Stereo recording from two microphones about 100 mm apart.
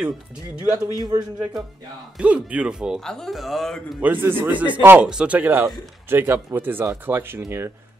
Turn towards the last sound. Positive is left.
turn(degrees=-25)  # may be behind; listen again after turning